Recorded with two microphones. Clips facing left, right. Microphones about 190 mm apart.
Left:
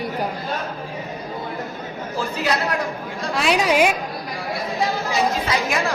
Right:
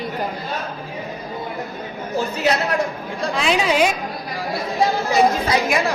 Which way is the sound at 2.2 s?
25° right (ahead or behind).